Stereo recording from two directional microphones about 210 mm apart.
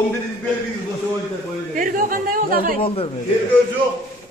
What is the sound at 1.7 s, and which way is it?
Speech, 40° right (ahead or behind).